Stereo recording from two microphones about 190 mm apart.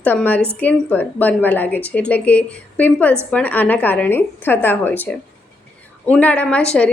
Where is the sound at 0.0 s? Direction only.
10° left (ahead or behind).